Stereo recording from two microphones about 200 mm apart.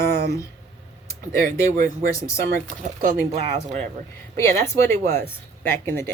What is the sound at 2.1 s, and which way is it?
Speech, 15° left (ahead or behind).